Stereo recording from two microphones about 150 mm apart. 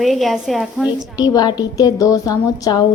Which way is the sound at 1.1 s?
25° left (ahead or behind).